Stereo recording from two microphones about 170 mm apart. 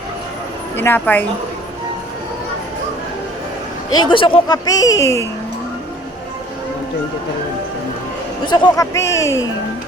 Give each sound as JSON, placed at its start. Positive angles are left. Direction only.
{"t": 0.8, "sound": "a woman's voice", "side_deg": 10}
{"t": 3.9, "sound": "speech", "side_deg": 30}
{"t": 8.4, "sound": "speech", "side_deg": 25}